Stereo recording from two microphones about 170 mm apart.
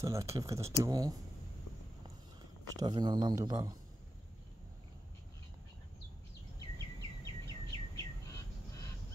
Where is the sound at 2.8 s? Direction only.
25° right (ahead or behind).